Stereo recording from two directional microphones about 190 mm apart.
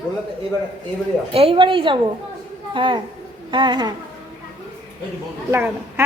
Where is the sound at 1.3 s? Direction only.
30° right (ahead or behind).